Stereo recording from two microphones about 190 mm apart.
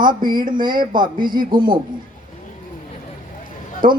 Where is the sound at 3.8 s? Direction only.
45° right (ahead or behind).